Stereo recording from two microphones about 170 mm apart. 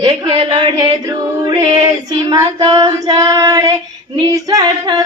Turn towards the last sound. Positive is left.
turn(degrees=-20)  # may be behind; listen again after turning